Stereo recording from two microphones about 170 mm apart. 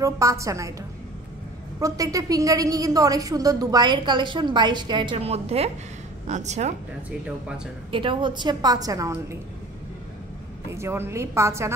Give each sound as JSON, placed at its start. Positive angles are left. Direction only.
{"t": 0.0, "sound": "a woman's voice", "side_deg": -20}
{"t": 1.8, "sound": "a woman's voice", "side_deg": -20}
{"t": 7.1, "sound": "a woman's voice", "side_deg": -5}
{"t": 7.9, "sound": "a woman's voice", "side_deg": -30}
{"t": 10.7, "sound": "a woman's voice", "side_deg": -15}